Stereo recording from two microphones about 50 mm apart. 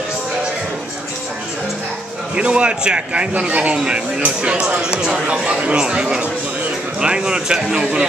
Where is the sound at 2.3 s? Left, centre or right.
Right.